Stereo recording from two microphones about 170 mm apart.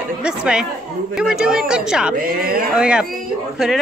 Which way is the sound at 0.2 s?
5° right (ahead or behind).